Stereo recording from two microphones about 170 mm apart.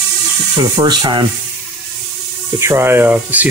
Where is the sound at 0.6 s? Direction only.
25° right (ahead or behind).